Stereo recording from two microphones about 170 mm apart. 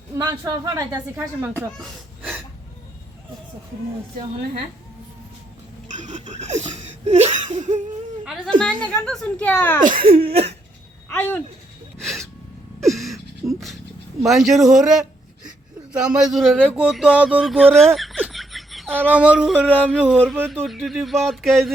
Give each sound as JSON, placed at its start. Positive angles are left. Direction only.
{"t": 0.2, "sound": "speech", "side_deg": -25}
{"t": 1.1, "sound": "yodeling", "side_deg": -15}
{"t": 6.0, "sound": "a sound", "side_deg": -45}
{"t": 6.3, "sound": "laughter", "side_deg": -40}
{"t": 8.5, "sound": "a woman's voice", "side_deg": 5}
{"t": 10.0, "sound": "laughter", "side_deg": -35}
{"t": 11.1, "sound": "speech", "side_deg": 10}
{"t": 11.9, "sound": "gasp", "side_deg": 0}
{"t": 13.4, "sound": "a sound", "side_deg": -15}
{"t": 14.3, "sound": "speech", "side_deg": 0}
{"t": 17.9, "sound": "laughter", "side_deg": 0}
{"t": 18.9, "sound": "yodeling", "side_deg": -10}
{"t": 20.5, "sound": "speech", "side_deg": 0}